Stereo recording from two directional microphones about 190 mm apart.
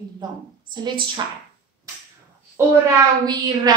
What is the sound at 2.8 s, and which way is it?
Speech, 20° right (ahead or behind).